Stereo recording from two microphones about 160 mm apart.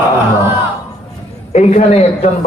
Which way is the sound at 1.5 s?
45° left (ahead or behind).